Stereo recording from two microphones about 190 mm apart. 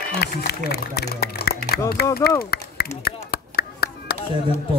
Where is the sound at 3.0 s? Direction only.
55° left (ahead or behind).